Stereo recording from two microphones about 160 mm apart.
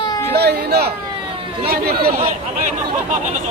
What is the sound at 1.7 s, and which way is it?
Speech, 70° right (ahead or behind).